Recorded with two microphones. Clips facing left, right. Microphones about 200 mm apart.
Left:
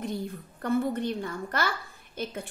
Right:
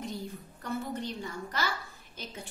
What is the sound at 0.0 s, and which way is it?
A woman's voice, 55° left (ahead or behind).